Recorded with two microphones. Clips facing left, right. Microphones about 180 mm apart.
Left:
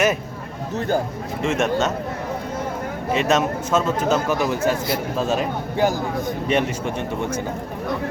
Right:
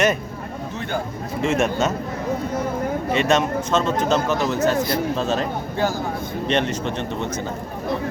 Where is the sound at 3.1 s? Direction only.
5° left (ahead or behind).